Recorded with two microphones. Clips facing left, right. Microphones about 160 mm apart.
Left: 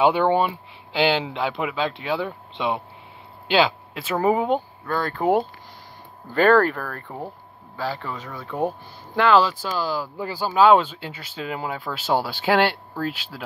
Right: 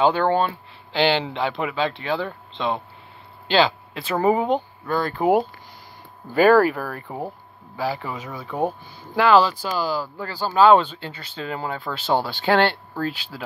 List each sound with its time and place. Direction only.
0.0 s speech: 15° left (ahead or behind); by 10.0 s centre (ahead or behind)
10.1 s speech: 15° left (ahead or behind)
10.4 s speech: 5° left (ahead or behind)